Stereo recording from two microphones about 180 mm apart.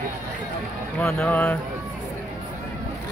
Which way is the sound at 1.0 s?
Centre (ahead or behind).